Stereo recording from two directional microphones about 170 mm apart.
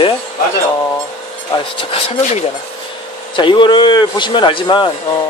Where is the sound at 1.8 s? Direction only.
35° left (ahead or behind).